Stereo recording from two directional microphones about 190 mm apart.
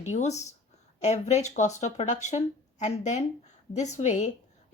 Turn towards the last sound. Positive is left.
turn(degrees=35)  # may be behind; listen again after turning